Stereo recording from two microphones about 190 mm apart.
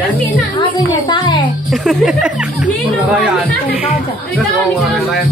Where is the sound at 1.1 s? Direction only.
25° left (ahead or behind).